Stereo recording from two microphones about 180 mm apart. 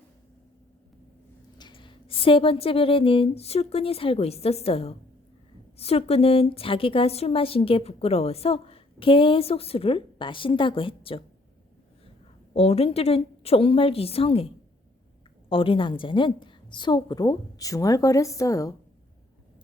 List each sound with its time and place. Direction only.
1.5 s a woman's voice: 25° left (ahead or behind)
12.5 s a woman's voice: 35° left (ahead or behind); by 18.7 s 15° left (ahead or behind)